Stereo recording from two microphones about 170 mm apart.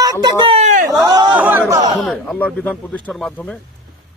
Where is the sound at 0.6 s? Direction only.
50° right (ahead or behind).